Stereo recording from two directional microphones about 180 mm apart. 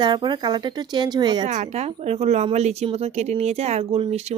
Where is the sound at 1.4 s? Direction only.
40° right (ahead or behind).